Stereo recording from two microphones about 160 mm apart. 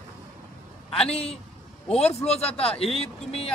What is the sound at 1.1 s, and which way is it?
Speech, 40° left (ahead or behind).